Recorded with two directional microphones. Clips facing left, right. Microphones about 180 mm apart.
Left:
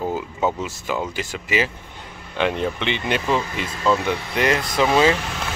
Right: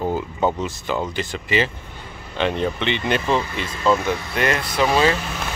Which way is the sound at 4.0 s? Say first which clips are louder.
Even; 20° left (ahead or behind).